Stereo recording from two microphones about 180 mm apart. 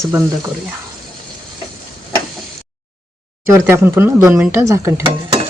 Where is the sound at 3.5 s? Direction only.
15° right (ahead or behind).